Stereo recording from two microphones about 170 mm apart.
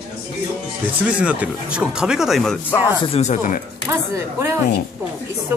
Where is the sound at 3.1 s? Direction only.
45° left (ahead or behind).